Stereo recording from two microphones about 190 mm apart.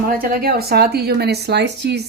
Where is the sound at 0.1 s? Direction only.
50° right (ahead or behind).